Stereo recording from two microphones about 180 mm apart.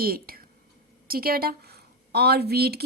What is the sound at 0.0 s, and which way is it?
A woman's voice, 55° right (ahead or behind).